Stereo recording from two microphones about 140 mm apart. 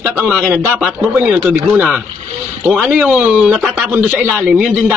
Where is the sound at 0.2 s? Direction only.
5° right (ahead or behind).